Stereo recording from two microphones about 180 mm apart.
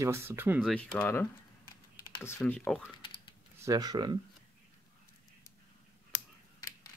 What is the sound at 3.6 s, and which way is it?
Speech, 20° right (ahead or behind).